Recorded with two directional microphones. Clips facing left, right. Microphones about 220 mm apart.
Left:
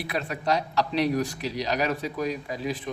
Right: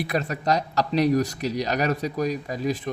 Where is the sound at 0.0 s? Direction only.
45° right (ahead or behind).